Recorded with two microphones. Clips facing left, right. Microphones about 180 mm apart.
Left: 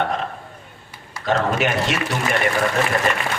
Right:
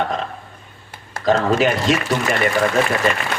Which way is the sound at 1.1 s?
35° right (ahead or behind).